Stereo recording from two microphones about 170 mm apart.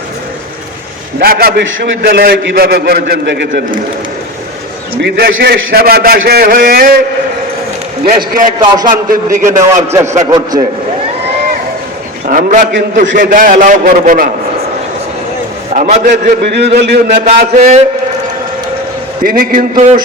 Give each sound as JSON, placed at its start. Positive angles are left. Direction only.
{"t": 1.2, "sound": "a man's voice", "side_deg": -60}
{"t": 4.9, "sound": "a man's voice", "side_deg": -75}
{"t": 8.0, "sound": "a man's voice", "side_deg": -60}
{"t": 8.5, "sound": "a man's voice", "side_deg": -25}
{"t": 8.9, "sound": "a man's voice", "side_deg": -50}
{"t": 9.4, "sound": "a man's voice", "side_deg": -20}
{"t": 12.2, "sound": "a man's voice", "side_deg": -50}
{"t": 15.7, "sound": "a man's voice", "side_deg": -45}
{"t": 16.4, "sound": "a man's voice", "side_deg": -80}
{"t": 17.2, "sound": "a man's voice", "side_deg": -40}
{"t": 19.2, "sound": "a man's voice", "side_deg": -55}